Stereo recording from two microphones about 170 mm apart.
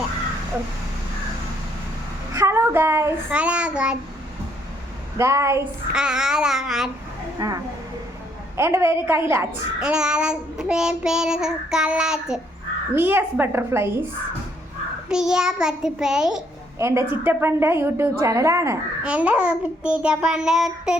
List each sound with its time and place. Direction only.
2.3 s a child's voice: 15° right (ahead or behind)
5.1 s speech: 15° right (ahead or behind)
5.9 s a child's voice: 5° right (ahead or behind)
7.3 s a child's voice: 20° right (ahead or behind)
15.1 s a child's voice: 5° right (ahead or behind)
16.7 s a woman's voice: 15° right (ahead or behind)